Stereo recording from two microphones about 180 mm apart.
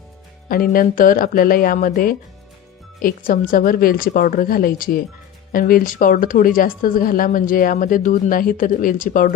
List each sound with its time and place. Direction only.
0.4 s speech: 55° left (ahead or behind)